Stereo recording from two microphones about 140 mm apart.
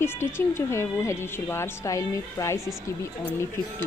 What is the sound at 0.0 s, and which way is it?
A woman's voice, 15° left (ahead or behind).